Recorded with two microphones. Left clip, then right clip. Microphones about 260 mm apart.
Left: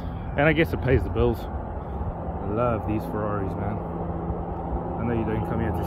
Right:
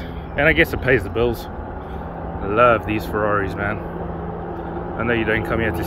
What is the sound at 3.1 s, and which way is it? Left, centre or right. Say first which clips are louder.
Speech: right 12 dB; centre.